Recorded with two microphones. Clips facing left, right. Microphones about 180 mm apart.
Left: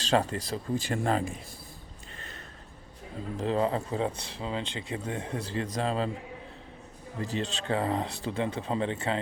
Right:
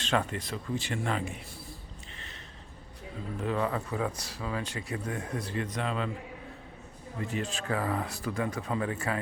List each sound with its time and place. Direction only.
0.0 s speech: 30° left (ahead or behind)
3.3 s speech: 30° left (ahead or behind)
7.2 s speech: 30° left (ahead or behind)